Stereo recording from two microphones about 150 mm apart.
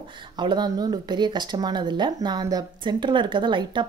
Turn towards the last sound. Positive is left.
turn(degrees=-30)  # may be behind; listen again after turning